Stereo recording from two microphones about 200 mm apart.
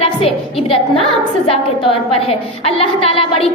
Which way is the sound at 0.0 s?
30° left (ahead or behind).